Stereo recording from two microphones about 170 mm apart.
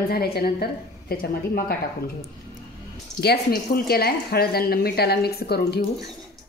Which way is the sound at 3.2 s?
65° left (ahead or behind).